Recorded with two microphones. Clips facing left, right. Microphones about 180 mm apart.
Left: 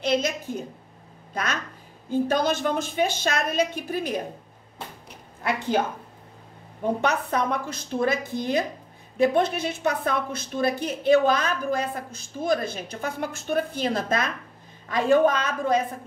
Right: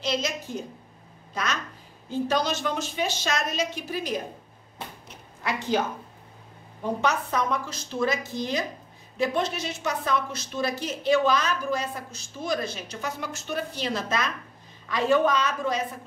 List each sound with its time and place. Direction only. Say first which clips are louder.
0.0 s a woman's voice: left 4 dB; 55° left (ahead or behind)
5.4 s a woman's voice: left 2 dB; 55° left (ahead or behind)
7.0 s a woman's voice: right 1 dB; 60° left (ahead or behind)